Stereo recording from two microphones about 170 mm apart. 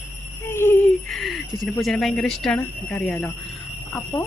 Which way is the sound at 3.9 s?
20° left (ahead or behind).